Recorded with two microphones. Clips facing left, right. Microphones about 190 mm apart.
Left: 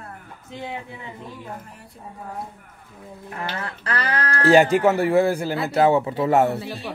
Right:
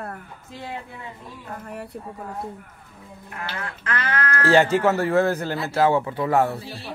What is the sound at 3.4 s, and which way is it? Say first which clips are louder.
Speech: left 2 dB; 35° left (ahead or behind).